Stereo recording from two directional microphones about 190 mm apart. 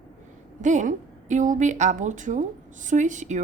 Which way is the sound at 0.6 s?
40° right (ahead or behind).